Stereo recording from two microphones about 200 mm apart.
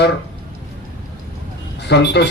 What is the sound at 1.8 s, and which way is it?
Speech, 55° left (ahead or behind).